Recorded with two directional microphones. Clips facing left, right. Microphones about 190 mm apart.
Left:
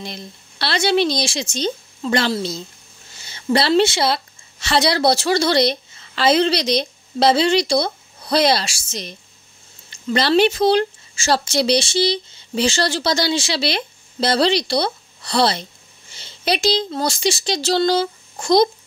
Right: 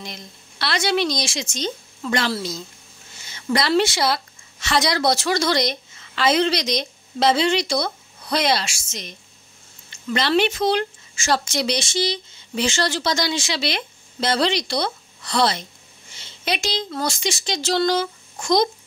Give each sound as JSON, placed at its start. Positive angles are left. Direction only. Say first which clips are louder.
{"t": 0.0, "sound": "a woman's voice", "louder": "left 4 dB", "side_deg": 30}